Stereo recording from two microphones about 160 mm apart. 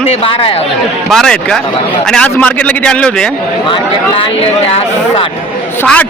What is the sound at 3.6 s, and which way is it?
Speech, 30° left (ahead or behind).